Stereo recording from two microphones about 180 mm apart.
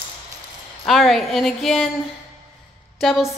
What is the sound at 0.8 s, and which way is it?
Speech, centre (ahead or behind).